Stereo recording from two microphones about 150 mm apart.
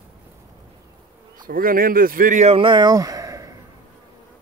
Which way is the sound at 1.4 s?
75° right (ahead or behind).